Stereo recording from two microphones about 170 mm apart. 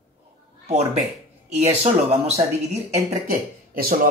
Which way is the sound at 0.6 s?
40° right (ahead or behind).